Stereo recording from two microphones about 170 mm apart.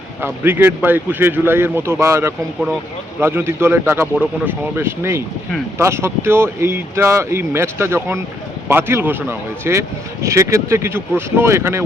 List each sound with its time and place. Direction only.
0.2 s speech: 15° right (ahead or behind)